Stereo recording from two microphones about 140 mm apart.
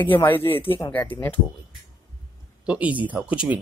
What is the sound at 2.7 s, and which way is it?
Speech, 10° right (ahead or behind).